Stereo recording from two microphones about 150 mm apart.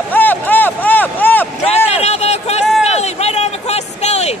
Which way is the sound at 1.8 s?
45° left (ahead or behind).